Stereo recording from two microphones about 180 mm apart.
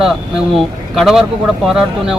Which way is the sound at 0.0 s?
5° right (ahead or behind).